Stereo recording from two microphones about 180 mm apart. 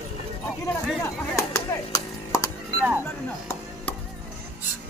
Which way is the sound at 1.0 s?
15° left (ahead or behind).